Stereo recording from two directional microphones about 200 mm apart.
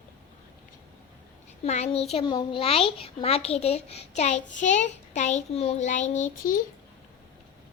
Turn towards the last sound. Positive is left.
turn(degrees=40)  # may be behind; listen again after turning